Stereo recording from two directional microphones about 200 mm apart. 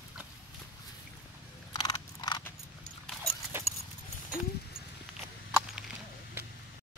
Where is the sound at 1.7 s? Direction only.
20° left (ahead or behind).